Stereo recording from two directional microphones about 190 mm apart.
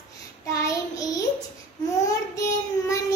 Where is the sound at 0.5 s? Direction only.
20° left (ahead or behind).